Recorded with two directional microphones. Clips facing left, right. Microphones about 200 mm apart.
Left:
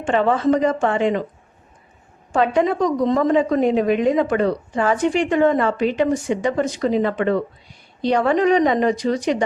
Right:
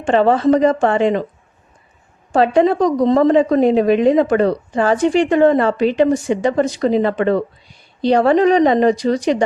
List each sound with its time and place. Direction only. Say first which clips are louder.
0.0 s a woman's voice: right 4 dB; 35° right (ahead or behind)
2.3 s a woman's voice: right 5 dB; 35° right (ahead or behind)